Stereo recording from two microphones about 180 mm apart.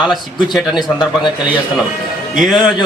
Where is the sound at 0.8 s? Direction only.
25° left (ahead or behind).